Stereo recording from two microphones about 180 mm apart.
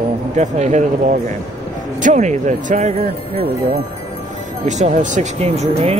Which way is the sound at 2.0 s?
40° right (ahead or behind).